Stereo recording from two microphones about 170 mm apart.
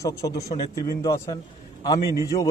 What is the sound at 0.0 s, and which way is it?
A man's voice, 20° left (ahead or behind).